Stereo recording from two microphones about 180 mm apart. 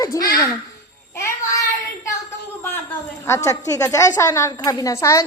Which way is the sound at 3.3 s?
15° left (ahead or behind).